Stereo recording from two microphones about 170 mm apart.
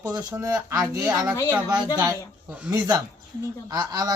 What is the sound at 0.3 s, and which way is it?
Speech, 20° right (ahead or behind).